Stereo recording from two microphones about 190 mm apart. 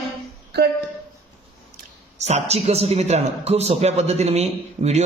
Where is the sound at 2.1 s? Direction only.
35° right (ahead or behind).